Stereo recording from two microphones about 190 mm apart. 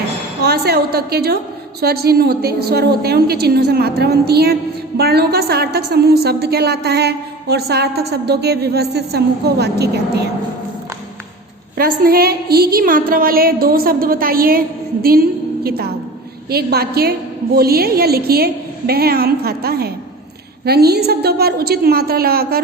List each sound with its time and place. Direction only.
0.4 s a woman's voice: 55° right (ahead or behind)
12.0 s a sound: 55° right (ahead or behind)
15.0 s a woman's voice: 50° right (ahead or behind)